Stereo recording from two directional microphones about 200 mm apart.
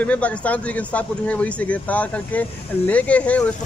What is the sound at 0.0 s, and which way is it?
Speech, 5° left (ahead or behind).